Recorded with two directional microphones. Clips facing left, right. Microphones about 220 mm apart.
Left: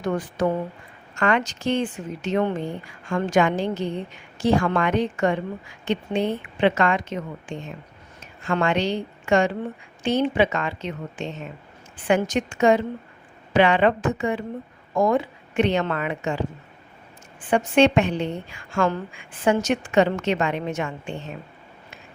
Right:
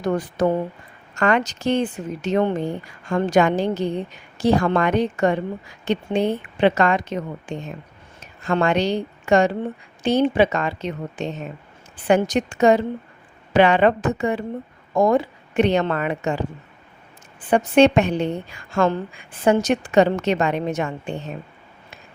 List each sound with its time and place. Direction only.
0.0 s a woman's voice: 40° right (ahead or behind)
17.5 s a woman's voice: 40° right (ahead or behind)